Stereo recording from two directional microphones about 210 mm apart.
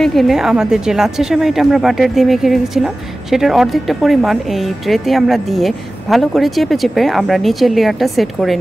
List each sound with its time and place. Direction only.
0.0 s a woman's voice: centre (ahead or behind)